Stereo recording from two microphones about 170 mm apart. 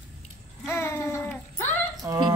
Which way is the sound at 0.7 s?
15° left (ahead or behind).